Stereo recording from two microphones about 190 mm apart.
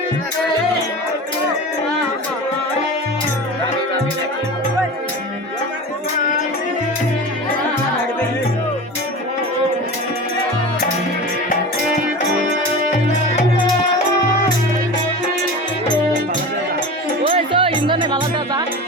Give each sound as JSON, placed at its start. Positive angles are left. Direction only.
{"t": 17.2, "sound": "music", "side_deg": -30}